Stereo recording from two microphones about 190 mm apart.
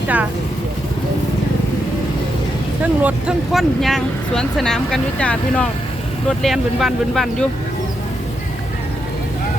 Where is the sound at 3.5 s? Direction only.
Centre (ahead or behind).